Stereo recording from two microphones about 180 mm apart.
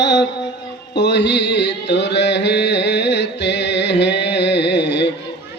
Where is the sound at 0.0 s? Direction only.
75° left (ahead or behind).